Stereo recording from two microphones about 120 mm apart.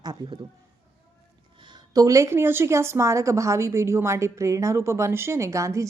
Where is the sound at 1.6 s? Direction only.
35° right (ahead or behind).